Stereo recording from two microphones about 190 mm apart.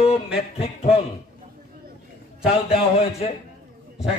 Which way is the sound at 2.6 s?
30° left (ahead or behind).